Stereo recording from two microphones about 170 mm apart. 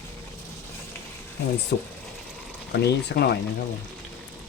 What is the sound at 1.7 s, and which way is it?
Speech, 75° left (ahead or behind).